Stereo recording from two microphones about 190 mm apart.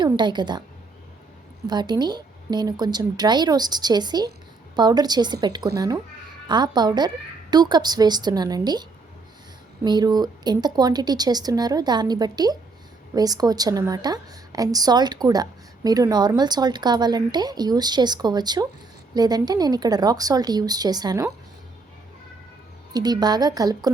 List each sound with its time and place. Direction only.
0.0 s a woman's voice: 25° right (ahead or behind)
1.6 s a woman's voice: 25° right (ahead or behind)
22.9 s a woman's voice: 20° right (ahead or behind)